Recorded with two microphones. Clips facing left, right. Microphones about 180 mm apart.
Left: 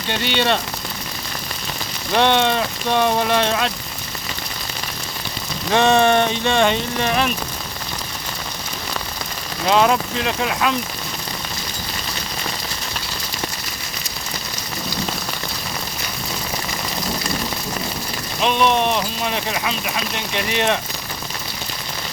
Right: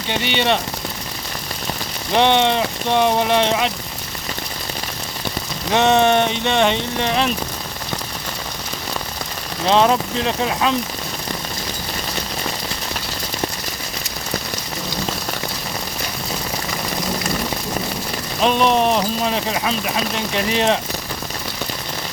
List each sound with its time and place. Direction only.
0.1 s speech: 15° right (ahead or behind)
2.1 s speech: 20° right (ahead or behind)
5.7 s speech: 20° right (ahead or behind)
9.6 s speech: 30° right (ahead or behind)
18.4 s speech: 40° right (ahead or behind)